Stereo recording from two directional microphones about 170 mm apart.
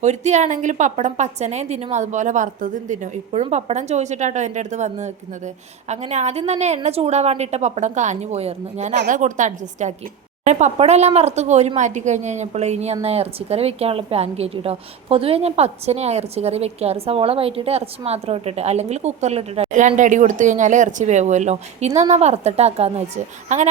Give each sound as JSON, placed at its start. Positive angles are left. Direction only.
{"t": 0.0, "sound": "a woman's voice", "side_deg": -40}